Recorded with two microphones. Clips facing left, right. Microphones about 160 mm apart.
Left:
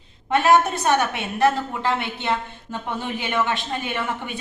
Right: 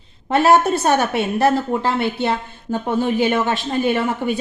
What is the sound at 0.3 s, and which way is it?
A woman's voice, 35° right (ahead or behind).